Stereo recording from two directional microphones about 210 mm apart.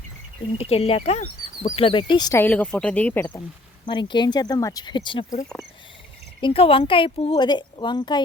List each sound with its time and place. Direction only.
0.6 s speech: 30° left (ahead or behind); by 3.4 s 10° left (ahead or behind)
3.8 s speech: 20° left (ahead or behind)
6.4 s speech: 25° left (ahead or behind)